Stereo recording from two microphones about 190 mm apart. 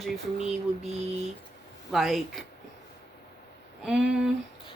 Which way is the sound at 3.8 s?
5° right (ahead or behind).